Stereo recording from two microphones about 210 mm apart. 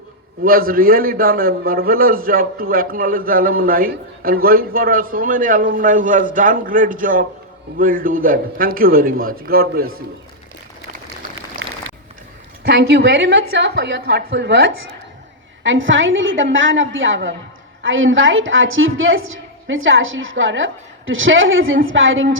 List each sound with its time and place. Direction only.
0.4 s a man's voice: 45° right (ahead or behind)
11.6 s a sound: 75° right (ahead or behind)
12.6 s a woman's voice: 55° right (ahead or behind)